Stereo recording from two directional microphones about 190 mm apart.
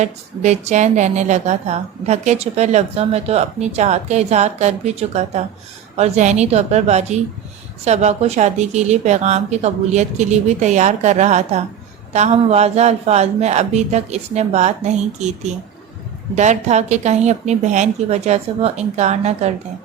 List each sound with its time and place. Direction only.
0.0 s a woman's voice: 35° right (ahead or behind)